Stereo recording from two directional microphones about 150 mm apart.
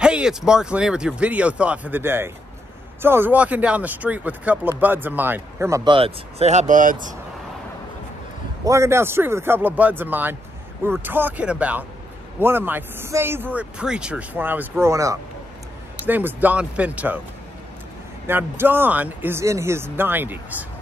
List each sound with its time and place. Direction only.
0.0 s speech: 5° right (ahead or behind)
5.9 s speech: 40° right (ahead or behind); by 7.2 s 60° right (ahead or behind)
8.6 s speech: 20° right (ahead or behind)
18.2 s speech: 15° right (ahead or behind)